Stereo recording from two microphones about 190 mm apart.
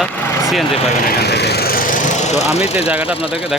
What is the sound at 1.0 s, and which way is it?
Speech, 55° left (ahead or behind).